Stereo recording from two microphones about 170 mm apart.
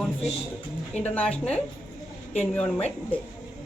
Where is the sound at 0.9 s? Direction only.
40° left (ahead or behind).